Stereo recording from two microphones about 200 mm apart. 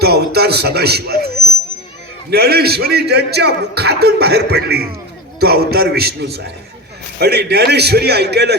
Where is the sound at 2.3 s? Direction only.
50° right (ahead or behind).